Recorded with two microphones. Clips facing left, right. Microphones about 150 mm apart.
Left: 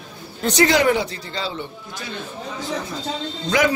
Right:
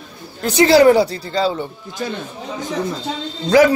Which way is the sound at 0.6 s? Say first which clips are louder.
Right 7 dB; 35° right (ahead or behind).